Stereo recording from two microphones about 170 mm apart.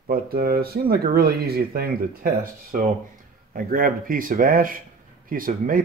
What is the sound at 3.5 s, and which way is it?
Speech, 55° right (ahead or behind).